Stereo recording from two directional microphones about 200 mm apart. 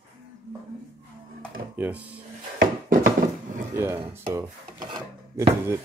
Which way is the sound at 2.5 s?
45° right (ahead or behind).